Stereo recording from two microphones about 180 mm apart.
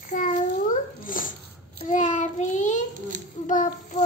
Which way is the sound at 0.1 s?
45° left (ahead or behind).